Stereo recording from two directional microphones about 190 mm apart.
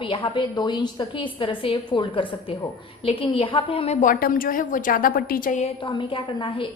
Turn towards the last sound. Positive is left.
turn(degrees=25)  # may be behind; listen again after turning